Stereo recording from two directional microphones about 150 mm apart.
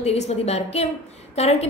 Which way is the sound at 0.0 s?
45° left (ahead or behind).